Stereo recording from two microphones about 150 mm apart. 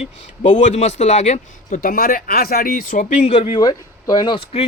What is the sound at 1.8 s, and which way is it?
Speech, 75° left (ahead or behind).